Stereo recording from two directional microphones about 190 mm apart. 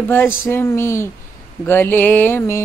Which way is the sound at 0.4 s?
10° left (ahead or behind).